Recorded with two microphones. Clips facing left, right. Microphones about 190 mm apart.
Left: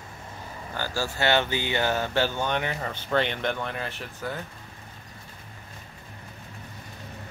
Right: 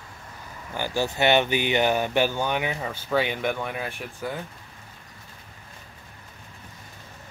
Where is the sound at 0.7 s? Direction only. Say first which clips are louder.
Right 4 dB; 15° right (ahead or behind).